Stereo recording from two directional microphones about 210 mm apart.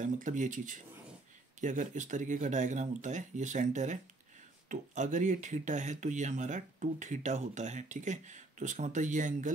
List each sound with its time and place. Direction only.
0.0 s speech: 35° right (ahead or behind)